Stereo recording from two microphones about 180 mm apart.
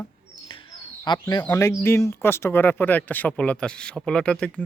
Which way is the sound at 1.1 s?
25° left (ahead or behind).